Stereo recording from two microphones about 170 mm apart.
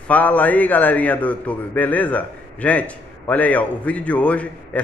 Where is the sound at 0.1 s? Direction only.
10° left (ahead or behind).